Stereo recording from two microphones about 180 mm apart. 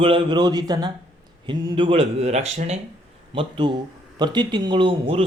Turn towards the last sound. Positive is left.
turn(degrees=-30)  # may be behind; listen again after turning